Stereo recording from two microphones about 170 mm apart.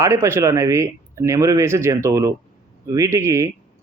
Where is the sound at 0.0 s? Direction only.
15° right (ahead or behind).